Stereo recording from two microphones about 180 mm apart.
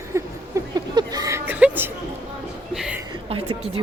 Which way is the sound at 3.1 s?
30° right (ahead or behind).